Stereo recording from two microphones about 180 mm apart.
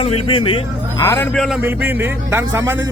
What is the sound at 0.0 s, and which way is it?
Speech, 30° left (ahead or behind).